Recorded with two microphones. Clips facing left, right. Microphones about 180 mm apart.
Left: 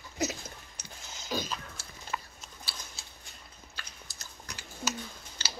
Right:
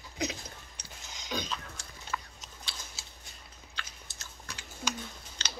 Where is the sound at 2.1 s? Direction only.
20° left (ahead or behind).